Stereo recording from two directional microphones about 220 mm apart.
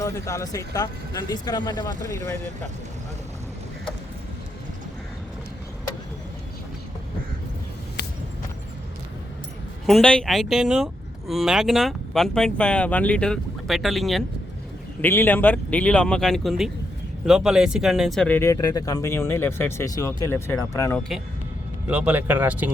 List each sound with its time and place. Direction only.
0.0 s speech: 15° left (ahead or behind)
9.8 s speech: centre (ahead or behind)
21.8 s speech: 10° right (ahead or behind)